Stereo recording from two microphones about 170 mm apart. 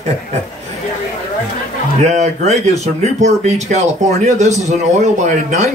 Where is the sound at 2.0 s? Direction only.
40° right (ahead or behind).